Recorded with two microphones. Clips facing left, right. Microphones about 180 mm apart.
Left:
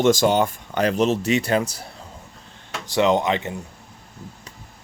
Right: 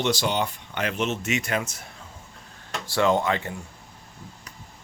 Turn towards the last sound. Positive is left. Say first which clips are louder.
# left 3 dB
turn(degrees=20)  # may be behind; listen again after turning